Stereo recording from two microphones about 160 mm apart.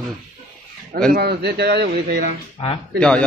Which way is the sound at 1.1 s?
90° right.